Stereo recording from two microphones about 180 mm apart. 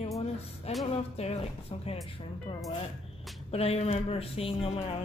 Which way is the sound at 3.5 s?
35° left (ahead or behind).